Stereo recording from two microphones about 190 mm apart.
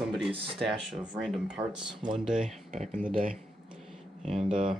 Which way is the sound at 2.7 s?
40° right (ahead or behind).